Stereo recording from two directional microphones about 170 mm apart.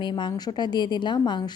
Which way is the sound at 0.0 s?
25° left (ahead or behind).